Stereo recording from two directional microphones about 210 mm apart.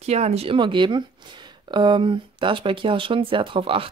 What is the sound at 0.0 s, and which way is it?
Speech, 30° right (ahead or behind).